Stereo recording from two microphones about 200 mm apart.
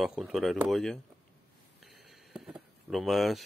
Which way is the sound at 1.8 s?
Centre (ahead or behind).